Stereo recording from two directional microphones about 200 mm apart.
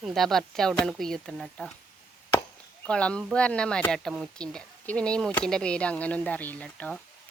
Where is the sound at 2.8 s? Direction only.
5° left (ahead or behind).